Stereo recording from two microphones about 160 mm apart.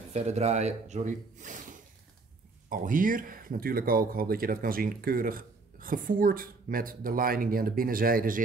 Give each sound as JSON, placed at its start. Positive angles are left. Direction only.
{"t": 0.1, "sound": "a man's voice", "side_deg": -40}